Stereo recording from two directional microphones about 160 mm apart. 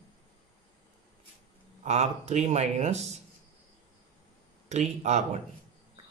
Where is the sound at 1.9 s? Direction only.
45° right (ahead or behind).